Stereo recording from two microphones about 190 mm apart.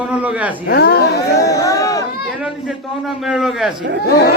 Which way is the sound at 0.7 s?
60° left (ahead or behind).